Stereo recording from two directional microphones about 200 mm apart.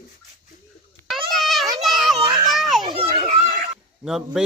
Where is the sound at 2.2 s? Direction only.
25° right (ahead or behind).